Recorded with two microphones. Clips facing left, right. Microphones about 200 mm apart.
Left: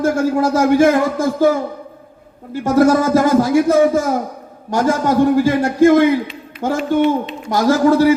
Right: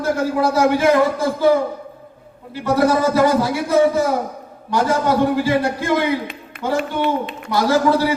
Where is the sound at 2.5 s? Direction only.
45° left (ahead or behind).